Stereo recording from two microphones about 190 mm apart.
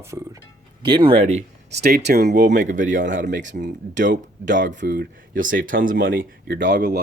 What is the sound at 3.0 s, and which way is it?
Speech, 70° right (ahead or behind).